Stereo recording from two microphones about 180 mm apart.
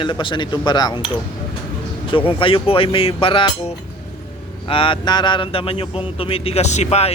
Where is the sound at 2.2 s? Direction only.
30° left (ahead or behind).